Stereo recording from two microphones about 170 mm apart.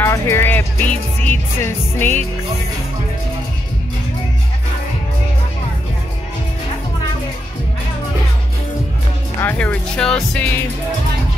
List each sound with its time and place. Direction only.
0.0 s music: 15° left (ahead or behind)
9.4 s speech: 10° left (ahead or behind)